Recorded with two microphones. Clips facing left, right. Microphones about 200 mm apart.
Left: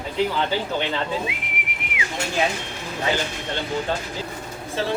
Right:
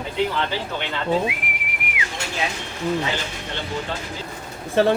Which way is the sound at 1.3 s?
25° left (ahead or behind).